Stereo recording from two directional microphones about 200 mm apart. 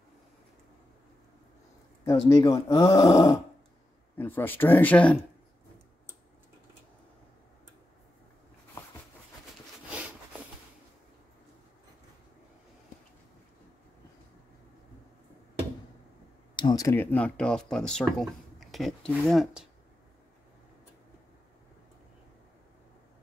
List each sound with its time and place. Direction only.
2.0 s speech: 15° left (ahead or behind)
16.5 s speech: 20° left (ahead or behind); by 19.7 s centre (ahead or behind)